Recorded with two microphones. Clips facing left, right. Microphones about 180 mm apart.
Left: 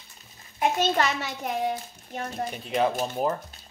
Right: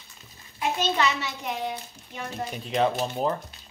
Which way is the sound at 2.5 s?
Centre (ahead or behind).